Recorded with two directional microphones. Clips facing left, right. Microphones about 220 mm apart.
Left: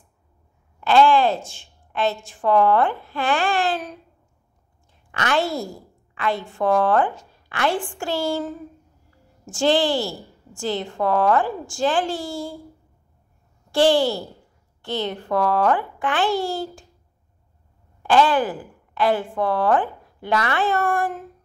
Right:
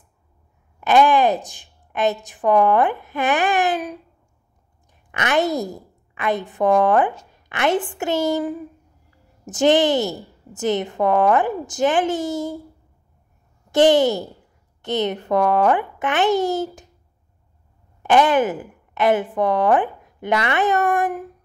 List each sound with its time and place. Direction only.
0.7 s a woman's voice: 20° right (ahead or behind)
5.1 s a woman's voice: 20° right (ahead or behind)
13.7 s a child's voice: 20° right (ahead or behind)
18.0 s a woman's voice: 20° right (ahead or behind)